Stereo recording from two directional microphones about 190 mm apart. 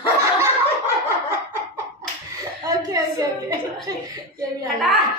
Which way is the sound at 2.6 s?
15° right (ahead or behind).